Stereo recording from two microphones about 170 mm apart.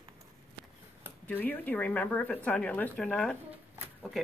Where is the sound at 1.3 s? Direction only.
10° left (ahead or behind).